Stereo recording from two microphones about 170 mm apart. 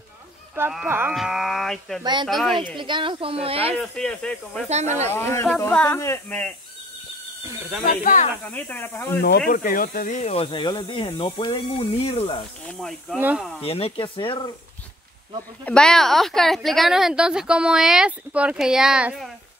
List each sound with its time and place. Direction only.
0.6 s speech: 10° right (ahead or behind)
1.1 s a woman's voice: centre (ahead or behind)
2.8 s a woman's voice: 30° right (ahead or behind)
3.7 s a woman's voice: centre (ahead or behind)
4.6 s a woman's voice: 40° right (ahead or behind)
5.1 s speech: 15° left (ahead or behind)
7.8 s speech: 50° left (ahead or behind)
8.5 s speech: 10° left (ahead or behind)
9.5 s speech: 55° left (ahead or behind); by 12.4 s 30° left (ahead or behind)
12.6 s a woman's voice: 5° left (ahead or behind)
13.2 s speech: 10° right (ahead or behind)
13.6 s speech: 35° left (ahead or behind)
15.6 s a woman's voice: 5° left (ahead or behind)